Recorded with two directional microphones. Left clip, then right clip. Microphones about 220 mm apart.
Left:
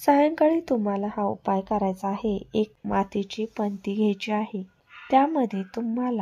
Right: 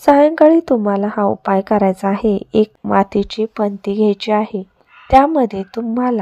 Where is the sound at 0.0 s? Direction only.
20° right (ahead or behind).